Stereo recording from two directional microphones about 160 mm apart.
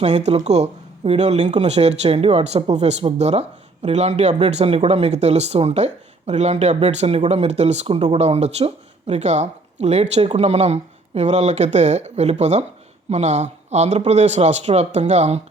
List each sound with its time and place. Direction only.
0.0 s speech: 45° right (ahead or behind)